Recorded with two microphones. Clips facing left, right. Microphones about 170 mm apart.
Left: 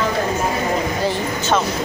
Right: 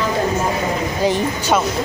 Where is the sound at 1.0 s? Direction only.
15° right (ahead or behind).